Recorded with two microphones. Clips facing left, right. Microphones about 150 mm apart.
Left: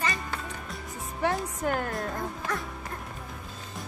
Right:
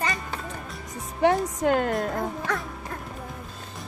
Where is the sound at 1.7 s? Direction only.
20° right (ahead or behind).